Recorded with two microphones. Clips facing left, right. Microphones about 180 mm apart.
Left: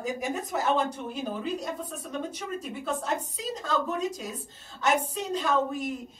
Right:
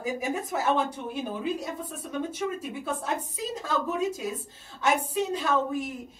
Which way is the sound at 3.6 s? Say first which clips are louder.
Right 1 dB; 5° right (ahead or behind).